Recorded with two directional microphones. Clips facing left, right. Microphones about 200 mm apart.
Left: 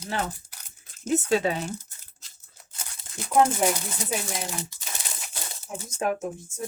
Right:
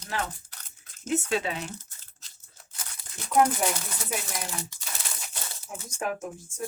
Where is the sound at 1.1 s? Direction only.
40° left (ahead or behind).